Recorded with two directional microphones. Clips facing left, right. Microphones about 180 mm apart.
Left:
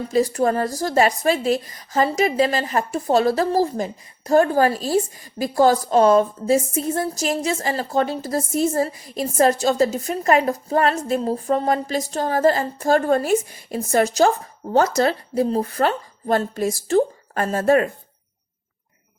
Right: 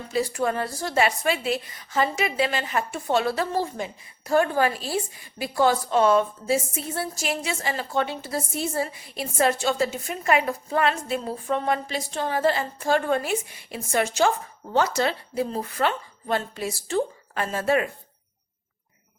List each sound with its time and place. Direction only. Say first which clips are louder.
0.1 s a woman's voice: left 6 dB; 40° left (ahead or behind)